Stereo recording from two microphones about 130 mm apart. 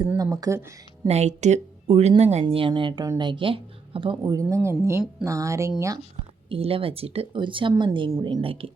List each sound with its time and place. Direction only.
0.2 s speech: 25° right (ahead or behind)
1.0 s speech: 60° right (ahead or behind)
2.4 s speech: 40° right (ahead or behind)
4.2 s speech: 25° right (ahead or behind)
6.5 s speech: 45° right (ahead or behind)
7.7 s speech: 25° right (ahead or behind); by 8.7 s 45° right (ahead or behind)